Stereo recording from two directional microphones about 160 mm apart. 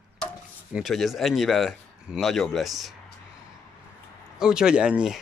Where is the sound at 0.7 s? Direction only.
Centre (ahead or behind).